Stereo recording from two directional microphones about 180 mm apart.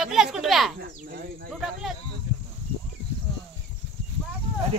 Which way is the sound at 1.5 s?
Centre (ahead or behind).